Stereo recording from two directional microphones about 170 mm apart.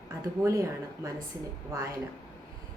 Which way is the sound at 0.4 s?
20° right (ahead or behind).